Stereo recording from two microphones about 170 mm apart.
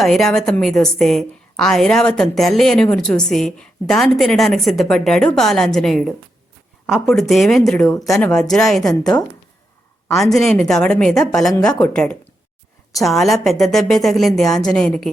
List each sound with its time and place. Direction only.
0.0 s a woman's voice: centre (ahead or behind)
7.9 s speech: 20° left (ahead or behind)
8.1 s a woman's voice: 5° left (ahead or behind)
8.8 s speech: 20° left (ahead or behind)
10.3 s a woman's voice: 5° left (ahead or behind)